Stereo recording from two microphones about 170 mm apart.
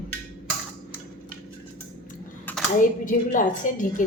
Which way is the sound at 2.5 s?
10° left (ahead or behind).